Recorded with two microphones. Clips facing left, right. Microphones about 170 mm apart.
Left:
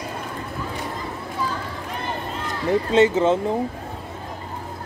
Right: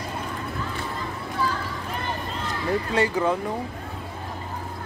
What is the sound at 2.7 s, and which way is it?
Speech, 20° left (ahead or behind).